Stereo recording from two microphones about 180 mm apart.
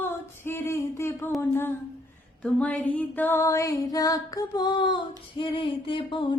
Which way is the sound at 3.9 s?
20° left (ahead or behind).